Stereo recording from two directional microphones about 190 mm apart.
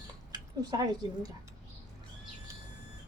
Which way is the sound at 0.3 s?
20° right (ahead or behind).